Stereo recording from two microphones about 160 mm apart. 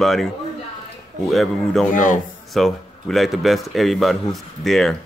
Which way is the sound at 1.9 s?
55° left (ahead or behind).